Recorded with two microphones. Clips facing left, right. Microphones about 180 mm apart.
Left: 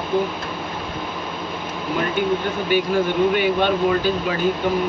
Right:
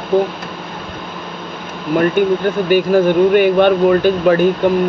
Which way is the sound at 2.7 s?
45° right (ahead or behind).